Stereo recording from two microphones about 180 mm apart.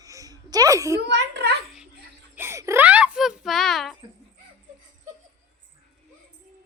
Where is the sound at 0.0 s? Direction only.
20° right (ahead or behind).